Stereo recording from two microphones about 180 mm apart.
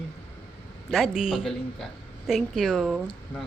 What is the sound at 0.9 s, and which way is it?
A woman's voice, centre (ahead or behind).